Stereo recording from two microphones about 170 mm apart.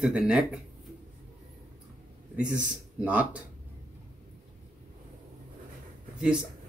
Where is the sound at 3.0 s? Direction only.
10° right (ahead or behind).